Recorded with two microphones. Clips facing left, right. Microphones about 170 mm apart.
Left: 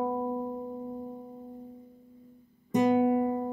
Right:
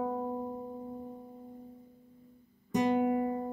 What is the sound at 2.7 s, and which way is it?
Music, 30° left (ahead or behind).